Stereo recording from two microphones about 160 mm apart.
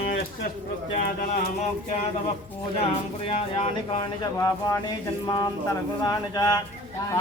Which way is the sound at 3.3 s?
35° left (ahead or behind).